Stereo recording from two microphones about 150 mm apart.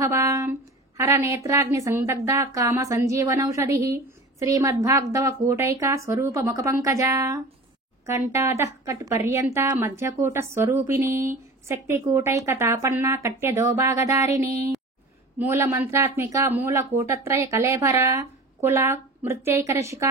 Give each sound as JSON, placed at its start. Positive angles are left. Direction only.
{"t": 0.0, "sound": "a woman's voice", "side_deg": -20}